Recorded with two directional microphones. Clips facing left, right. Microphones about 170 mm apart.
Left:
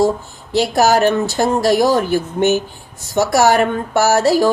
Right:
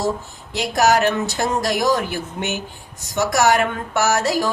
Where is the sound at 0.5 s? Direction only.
30° left (ahead or behind).